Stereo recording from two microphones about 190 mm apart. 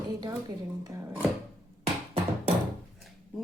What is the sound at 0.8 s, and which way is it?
Speech, 20° right (ahead or behind).